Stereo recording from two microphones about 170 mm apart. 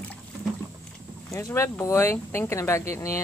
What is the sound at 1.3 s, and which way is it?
Speech, 15° left (ahead or behind).